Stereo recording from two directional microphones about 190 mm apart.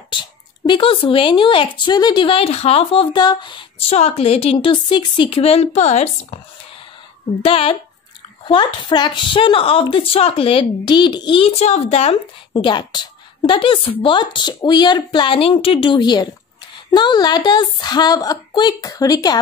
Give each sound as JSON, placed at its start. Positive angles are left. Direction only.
{"t": 0.1, "sound": "a woman's voice", "side_deg": 25}
{"t": 7.4, "sound": "a woman's voice", "side_deg": 30}